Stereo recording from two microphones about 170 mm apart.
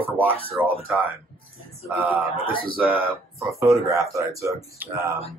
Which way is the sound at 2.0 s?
10° right (ahead or behind).